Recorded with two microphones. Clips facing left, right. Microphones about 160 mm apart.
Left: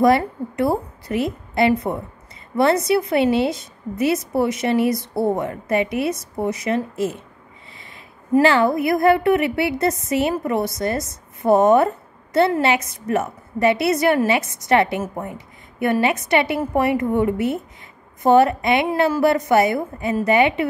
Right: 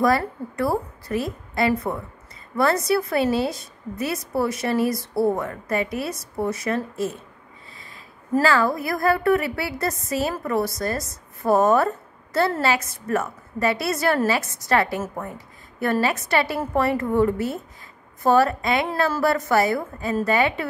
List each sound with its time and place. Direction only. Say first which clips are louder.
0.0 s a woman's voice: left 4 dB; 20° left (ahead or behind)
8.4 s a woman's voice: left 4 dB; 25° left (ahead or behind)